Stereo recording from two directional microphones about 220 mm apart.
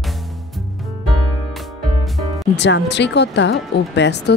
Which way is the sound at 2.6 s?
55° left (ahead or behind).